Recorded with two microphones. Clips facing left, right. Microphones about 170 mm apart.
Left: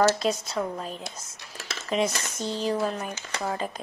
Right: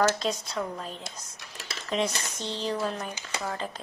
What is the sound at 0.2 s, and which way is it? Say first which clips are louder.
Speech: left 3 dB; 5° left (ahead or behind).